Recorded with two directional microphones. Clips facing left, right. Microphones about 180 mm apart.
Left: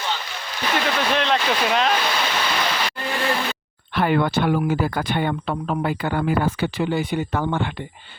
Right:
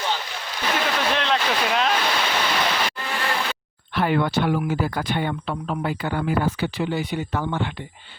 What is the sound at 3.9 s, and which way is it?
Speech, 55° left (ahead or behind).